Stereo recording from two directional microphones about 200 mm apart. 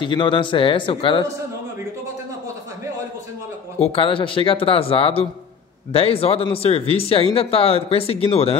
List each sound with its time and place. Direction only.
0.0 s speech: 25° left (ahead or behind)
3.8 s speech: 25° left (ahead or behind)